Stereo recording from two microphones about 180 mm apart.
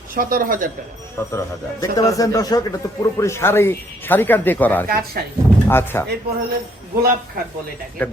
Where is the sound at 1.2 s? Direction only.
15° left (ahead or behind).